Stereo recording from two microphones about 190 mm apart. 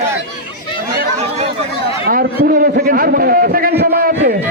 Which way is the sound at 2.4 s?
50° right (ahead or behind).